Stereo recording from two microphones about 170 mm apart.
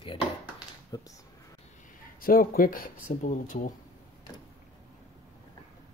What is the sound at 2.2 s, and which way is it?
Speech, 60° left (ahead or behind).